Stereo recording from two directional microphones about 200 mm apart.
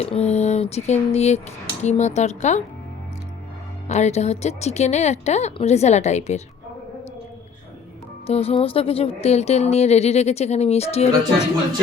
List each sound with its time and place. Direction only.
0.0 s speech: 30° left (ahead or behind)
3.8 s speech: 35° left (ahead or behind)
8.3 s speech: 30° left (ahead or behind)